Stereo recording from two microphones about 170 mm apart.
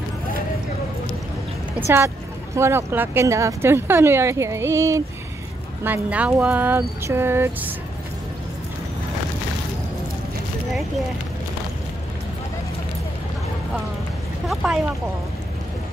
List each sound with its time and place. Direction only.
1.9 s speech: 15° right (ahead or behind)
14.5 s speech: centre (ahead or behind)